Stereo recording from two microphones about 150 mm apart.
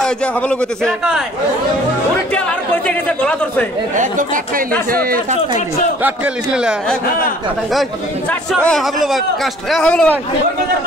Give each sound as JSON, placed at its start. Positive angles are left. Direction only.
{"t": 0.0, "sound": "a man's voice", "side_deg": 5}
{"t": 2.9, "sound": "a man's voice", "side_deg": 10}
{"t": 3.9, "sound": "speech", "side_deg": -60}
{"t": 6.0, "sound": "a man's voice", "side_deg": -10}
{"t": 8.3, "sound": "a man's voice", "side_deg": 5}